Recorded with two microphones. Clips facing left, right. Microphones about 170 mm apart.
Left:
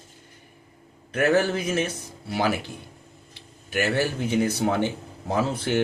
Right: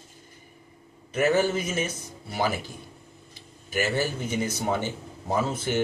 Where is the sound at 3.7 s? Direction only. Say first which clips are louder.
Left 2 dB; 60° left (ahead or behind).